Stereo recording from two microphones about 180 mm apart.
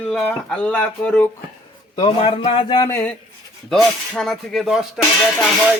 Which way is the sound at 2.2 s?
35° left (ahead or behind).